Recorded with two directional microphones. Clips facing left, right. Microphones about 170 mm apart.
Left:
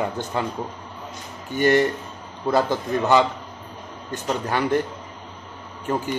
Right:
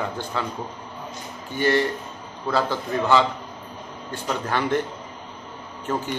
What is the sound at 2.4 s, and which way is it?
A man's voice, 20° left (ahead or behind).